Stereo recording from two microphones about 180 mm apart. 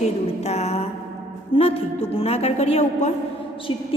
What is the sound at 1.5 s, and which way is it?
A man's voice, 35° left (ahead or behind).